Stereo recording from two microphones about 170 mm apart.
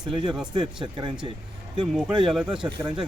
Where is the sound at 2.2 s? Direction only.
Centre (ahead or behind).